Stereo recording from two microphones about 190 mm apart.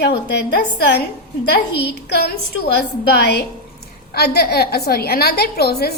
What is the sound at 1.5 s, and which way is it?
Speech, 60° left (ahead or behind).